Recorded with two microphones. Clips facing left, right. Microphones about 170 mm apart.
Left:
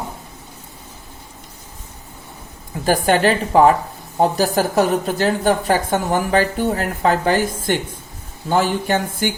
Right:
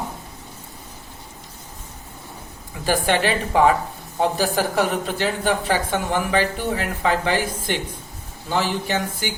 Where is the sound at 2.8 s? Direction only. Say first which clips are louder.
Left 5 dB; 45° left (ahead or behind).